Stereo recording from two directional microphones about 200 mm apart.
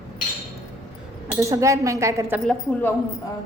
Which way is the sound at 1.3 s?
15° right (ahead or behind).